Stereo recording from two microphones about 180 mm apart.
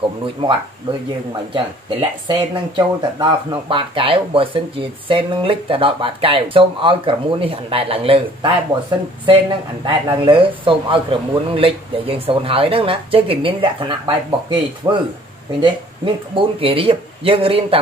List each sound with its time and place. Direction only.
0.4 s speech: 25° right (ahead or behind)
16.3 s speech: 30° right (ahead or behind)